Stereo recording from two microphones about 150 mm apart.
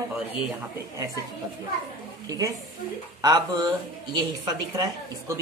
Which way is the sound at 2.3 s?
25° right (ahead or behind).